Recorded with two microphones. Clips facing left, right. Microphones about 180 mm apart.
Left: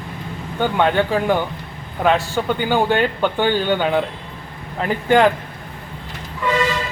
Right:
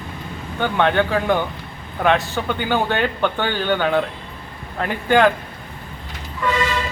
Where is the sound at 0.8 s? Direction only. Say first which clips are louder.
Even; 10° left (ahead or behind).